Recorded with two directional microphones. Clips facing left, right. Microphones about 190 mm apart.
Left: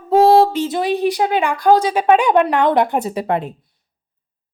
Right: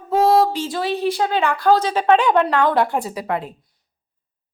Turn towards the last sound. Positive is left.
turn(degrees=25)  # may be behind; listen again after turning